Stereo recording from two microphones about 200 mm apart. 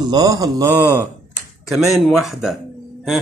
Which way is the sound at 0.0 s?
20° right (ahead or behind).